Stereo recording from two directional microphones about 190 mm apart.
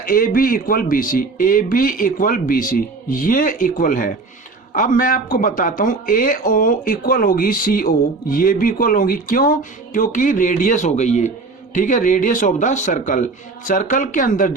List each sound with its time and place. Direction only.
0.0 s speech: 50° left (ahead or behind)